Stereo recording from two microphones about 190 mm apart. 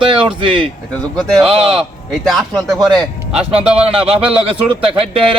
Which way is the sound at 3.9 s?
30° right (ahead or behind).